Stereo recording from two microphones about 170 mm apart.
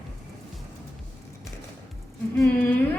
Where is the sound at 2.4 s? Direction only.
10° left (ahead or behind).